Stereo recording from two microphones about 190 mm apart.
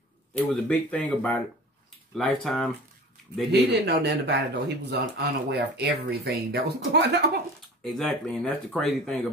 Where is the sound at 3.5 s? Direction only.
60° right (ahead or behind).